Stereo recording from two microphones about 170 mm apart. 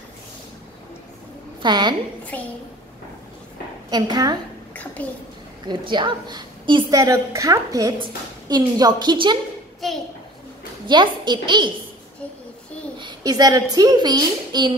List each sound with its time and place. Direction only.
1.6 s a woman's voice: 25° right (ahead or behind)
2.3 s a child's voice: 10° left (ahead or behind)
3.9 s a woman's voice: 25° right (ahead or behind)
5.7 s a woman's voice: 25° right (ahead or behind)
9.8 s a child's voice: centre (ahead or behind)
10.9 s a woman's voice: 25° right (ahead or behind)
13.0 s a child's voice: 20° right (ahead or behind)